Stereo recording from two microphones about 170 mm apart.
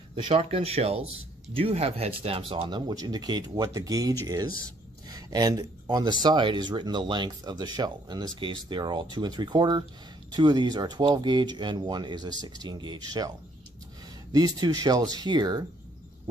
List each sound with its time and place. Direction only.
0.1 s speech: 35° right (ahead or behind)
14.3 s speech: 25° right (ahead or behind)